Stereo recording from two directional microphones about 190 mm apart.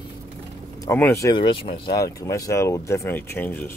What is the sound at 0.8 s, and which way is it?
Speech, 15° left (ahead or behind).